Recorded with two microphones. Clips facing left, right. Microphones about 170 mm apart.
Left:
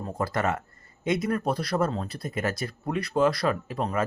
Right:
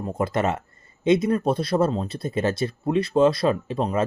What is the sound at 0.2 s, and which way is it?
Speech, 20° right (ahead or behind).